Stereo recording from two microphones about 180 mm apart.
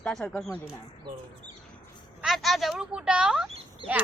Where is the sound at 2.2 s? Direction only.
Centre (ahead or behind).